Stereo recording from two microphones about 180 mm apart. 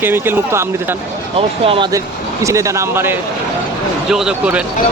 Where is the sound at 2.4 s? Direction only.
15° right (ahead or behind).